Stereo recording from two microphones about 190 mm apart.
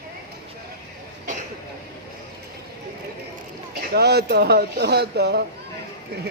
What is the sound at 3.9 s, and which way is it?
Speech, 60° right (ahead or behind).